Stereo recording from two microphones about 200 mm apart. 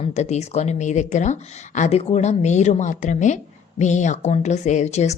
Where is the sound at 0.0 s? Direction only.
35° left (ahead or behind).